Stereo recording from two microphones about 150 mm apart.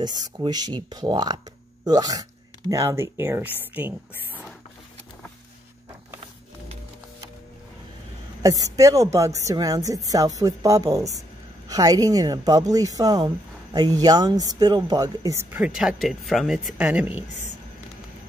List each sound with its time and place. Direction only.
0.0 s a woman's voice: 30° right (ahead or behind); by 3.9 s 10° right (ahead or behind)
8.4 s a woman's voice: 25° right (ahead or behind)
15.7 s speech: 5° right (ahead or behind)